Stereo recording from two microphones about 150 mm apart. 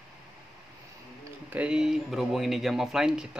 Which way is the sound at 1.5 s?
5° right (ahead or behind).